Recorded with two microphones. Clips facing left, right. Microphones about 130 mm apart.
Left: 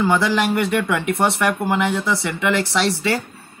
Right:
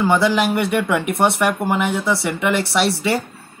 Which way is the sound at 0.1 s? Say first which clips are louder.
Right 2 dB; 20° right (ahead or behind).